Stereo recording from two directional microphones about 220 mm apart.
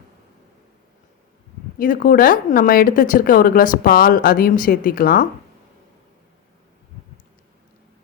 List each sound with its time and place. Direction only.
1.8 s speech: 40° left (ahead or behind)